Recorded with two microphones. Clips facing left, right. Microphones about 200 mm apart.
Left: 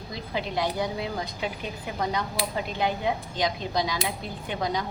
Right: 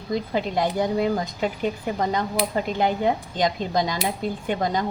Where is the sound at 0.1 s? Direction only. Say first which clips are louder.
Right 7 dB; 50° right (ahead or behind).